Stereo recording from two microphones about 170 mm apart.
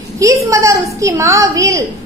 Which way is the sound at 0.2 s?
20° right (ahead or behind).